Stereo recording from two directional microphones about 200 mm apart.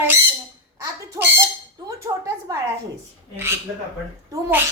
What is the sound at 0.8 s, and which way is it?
Chicken, 15° right (ahead or behind).